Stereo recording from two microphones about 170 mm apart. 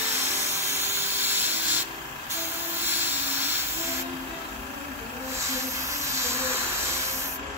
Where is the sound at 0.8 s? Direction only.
15° right (ahead or behind).